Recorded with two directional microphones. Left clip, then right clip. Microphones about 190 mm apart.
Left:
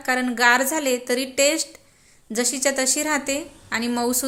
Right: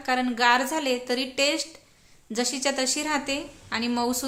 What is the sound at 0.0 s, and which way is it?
A woman's voice, 15° left (ahead or behind).